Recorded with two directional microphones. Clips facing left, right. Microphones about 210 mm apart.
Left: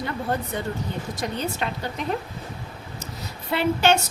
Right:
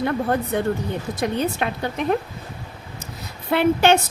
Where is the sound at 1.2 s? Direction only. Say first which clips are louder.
Right 6 dB; 55° right (ahead or behind).